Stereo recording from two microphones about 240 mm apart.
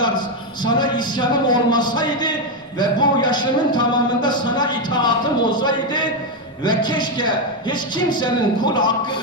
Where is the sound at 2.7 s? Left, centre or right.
Centre.